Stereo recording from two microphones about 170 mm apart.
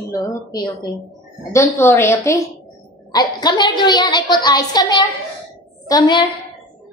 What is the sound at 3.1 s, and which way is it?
A woman's voice, 25° left (ahead or behind).